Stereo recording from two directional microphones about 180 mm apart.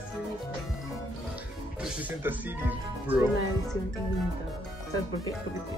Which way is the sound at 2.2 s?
10° right (ahead or behind).